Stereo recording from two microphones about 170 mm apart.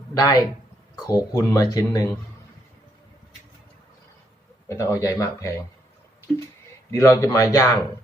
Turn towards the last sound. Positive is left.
turn(degrees=20)  # may be behind; listen again after turning